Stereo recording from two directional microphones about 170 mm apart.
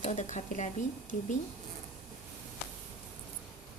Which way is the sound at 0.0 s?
40° left (ahead or behind).